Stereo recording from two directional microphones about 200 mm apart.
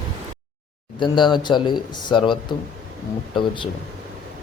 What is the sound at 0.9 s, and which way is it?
Speech, 25° left (ahead or behind).